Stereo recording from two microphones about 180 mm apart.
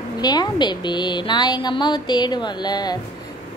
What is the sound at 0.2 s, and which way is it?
A woman's voice, 20° left (ahead or behind).